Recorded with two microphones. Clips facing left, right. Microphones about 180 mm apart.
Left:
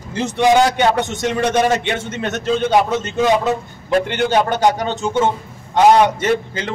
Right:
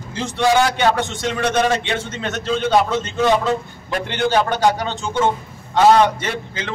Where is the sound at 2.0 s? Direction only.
45° left (ahead or behind).